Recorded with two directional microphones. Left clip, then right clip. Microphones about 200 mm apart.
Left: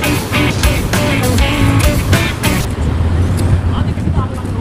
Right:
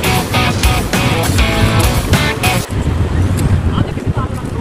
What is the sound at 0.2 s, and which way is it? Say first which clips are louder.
Music: right 1 dB; centre (ahead or behind).